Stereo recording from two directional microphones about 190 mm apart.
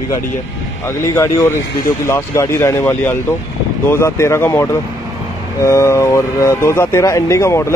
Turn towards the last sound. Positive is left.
turn(degrees=15)  # may be behind; listen again after turning